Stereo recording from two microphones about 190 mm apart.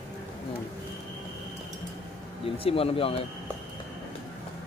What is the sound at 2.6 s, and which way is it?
Speech, 30° left (ahead or behind).